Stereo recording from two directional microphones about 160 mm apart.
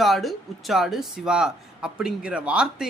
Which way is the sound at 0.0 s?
Centre (ahead or behind).